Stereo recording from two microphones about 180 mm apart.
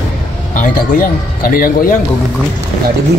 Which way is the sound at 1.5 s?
50° left (ahead or behind).